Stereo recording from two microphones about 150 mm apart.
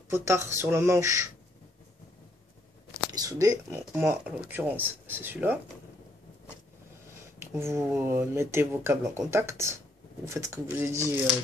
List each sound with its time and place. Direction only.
0.1 s speech: 20° right (ahead or behind)
3.1 s speech: 25° right (ahead or behind)
7.3 s speech: 15° right (ahead or behind)